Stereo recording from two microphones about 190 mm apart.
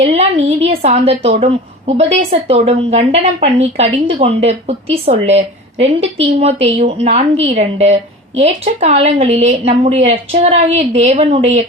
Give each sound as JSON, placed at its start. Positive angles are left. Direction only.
{"t": 0.0, "sound": "a woman's voice", "side_deg": -30}